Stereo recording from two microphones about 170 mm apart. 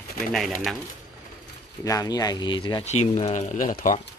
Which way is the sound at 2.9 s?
45° left (ahead or behind).